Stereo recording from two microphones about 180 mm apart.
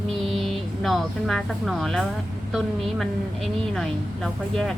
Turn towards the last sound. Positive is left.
turn(degrees=5)  # may be behind; listen again after turning